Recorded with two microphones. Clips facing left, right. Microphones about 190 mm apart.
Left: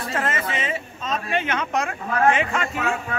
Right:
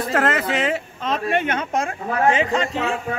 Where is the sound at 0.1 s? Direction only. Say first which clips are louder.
Right 5 dB; 75° right (ahead or behind).